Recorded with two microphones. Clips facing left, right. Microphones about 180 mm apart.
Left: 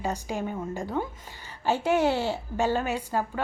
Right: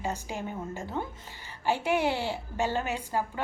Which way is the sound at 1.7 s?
15° right (ahead or behind).